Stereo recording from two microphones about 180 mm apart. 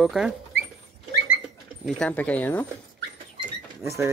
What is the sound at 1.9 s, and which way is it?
Speech, 5° left (ahead or behind).